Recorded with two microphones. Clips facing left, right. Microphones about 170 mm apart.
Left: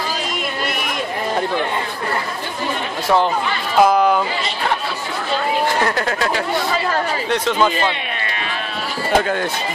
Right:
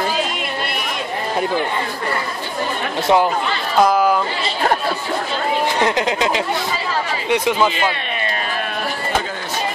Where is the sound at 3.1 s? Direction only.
20° right (ahead or behind).